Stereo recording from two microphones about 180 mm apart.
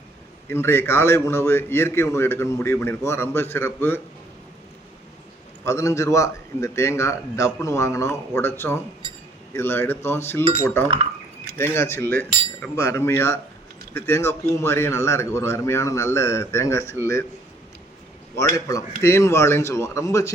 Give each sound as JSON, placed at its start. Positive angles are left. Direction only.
{"t": 0.4, "sound": "a man's voice", "side_deg": 15}
{"t": 5.6, "sound": "a man's voice", "side_deg": 15}
{"t": 11.5, "sound": "a man's voice", "side_deg": 15}
{"t": 18.3, "sound": "a man's voice", "side_deg": 15}